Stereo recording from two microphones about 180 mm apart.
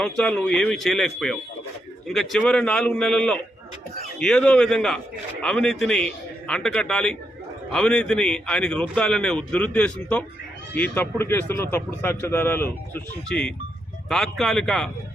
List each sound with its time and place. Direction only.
0.0 s a man's voice: 5° left (ahead or behind)